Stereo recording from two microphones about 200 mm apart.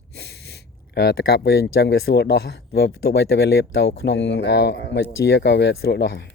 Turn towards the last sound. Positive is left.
turn(degrees=60)  # may be behind; listen again after turning